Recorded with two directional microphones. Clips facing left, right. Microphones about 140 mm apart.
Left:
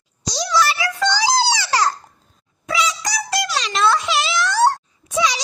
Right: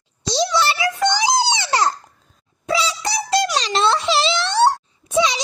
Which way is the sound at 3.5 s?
30° right (ahead or behind).